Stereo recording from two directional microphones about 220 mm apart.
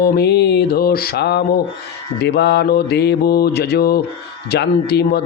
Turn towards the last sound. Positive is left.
turn(degrees=50)  # may be behind; listen again after turning